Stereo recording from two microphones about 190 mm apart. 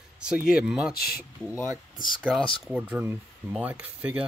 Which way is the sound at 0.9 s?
55° left (ahead or behind).